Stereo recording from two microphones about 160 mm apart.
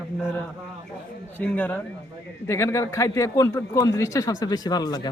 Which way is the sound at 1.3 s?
10° left (ahead or behind).